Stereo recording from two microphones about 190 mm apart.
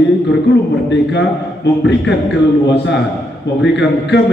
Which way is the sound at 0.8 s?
70° left (ahead or behind).